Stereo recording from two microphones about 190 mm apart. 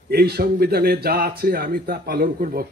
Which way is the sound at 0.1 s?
55° right (ahead or behind).